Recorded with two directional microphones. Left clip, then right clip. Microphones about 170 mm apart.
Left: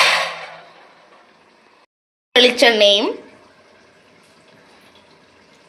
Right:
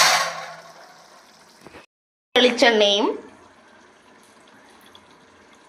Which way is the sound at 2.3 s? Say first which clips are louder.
Left 4 dB; 10° left (ahead or behind).